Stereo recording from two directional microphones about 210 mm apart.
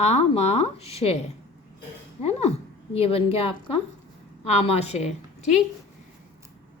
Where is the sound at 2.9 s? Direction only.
30° left (ahead or behind).